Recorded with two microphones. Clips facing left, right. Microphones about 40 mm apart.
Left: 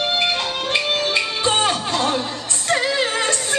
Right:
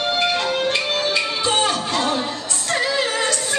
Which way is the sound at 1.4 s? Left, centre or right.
Left.